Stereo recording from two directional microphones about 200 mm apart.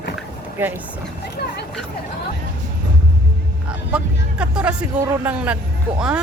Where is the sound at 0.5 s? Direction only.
10° right (ahead or behind).